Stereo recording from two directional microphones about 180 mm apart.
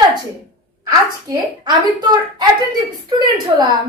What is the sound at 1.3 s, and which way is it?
A child's voice, 25° right (ahead or behind).